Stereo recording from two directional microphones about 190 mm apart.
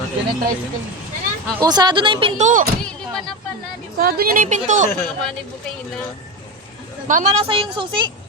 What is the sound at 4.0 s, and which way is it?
Speech, 55° right (ahead or behind).